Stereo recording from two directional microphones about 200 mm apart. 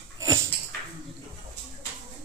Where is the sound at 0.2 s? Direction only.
15° right (ahead or behind).